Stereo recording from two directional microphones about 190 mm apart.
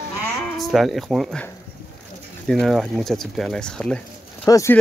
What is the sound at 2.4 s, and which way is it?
Speech, centre (ahead or behind).